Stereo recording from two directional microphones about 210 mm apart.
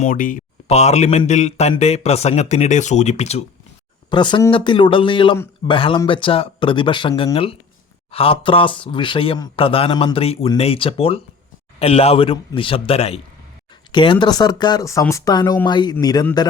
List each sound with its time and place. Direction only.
0.0 s a man's voice: 40° left (ahead or behind); by 16.5 s 20° left (ahead or behind)